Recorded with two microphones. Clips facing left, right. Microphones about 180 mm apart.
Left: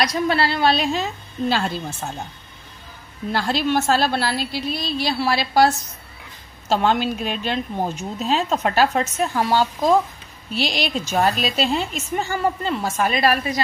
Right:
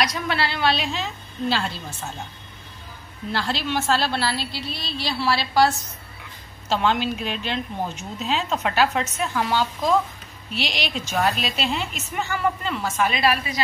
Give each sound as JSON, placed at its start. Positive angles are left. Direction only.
{"t": 0.0, "sound": "a woman's voice", "side_deg": 40}
{"t": 3.3, "sound": "a woman's voice", "side_deg": 45}
{"t": 6.7, "sound": "speech", "side_deg": 45}